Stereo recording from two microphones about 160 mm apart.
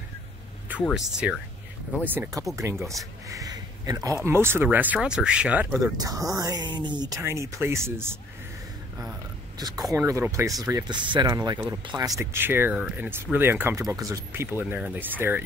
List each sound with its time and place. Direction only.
0.9 s speech: 5° right (ahead or behind)
2.8 s speech: centre (ahead or behind)
3.3 s speech: 20° right (ahead or behind)
9.6 s speech: 25° right (ahead or behind)